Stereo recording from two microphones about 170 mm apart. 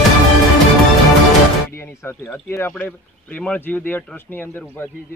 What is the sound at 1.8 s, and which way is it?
Speech, 10° left (ahead or behind).